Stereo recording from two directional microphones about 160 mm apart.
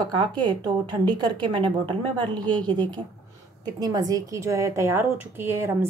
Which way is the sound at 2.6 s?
10° left (ahead or behind).